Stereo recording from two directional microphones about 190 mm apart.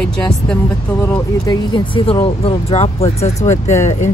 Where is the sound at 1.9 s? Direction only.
30° left (ahead or behind).